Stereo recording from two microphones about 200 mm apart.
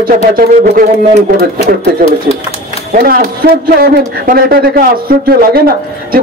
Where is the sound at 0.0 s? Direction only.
45° right (ahead or behind).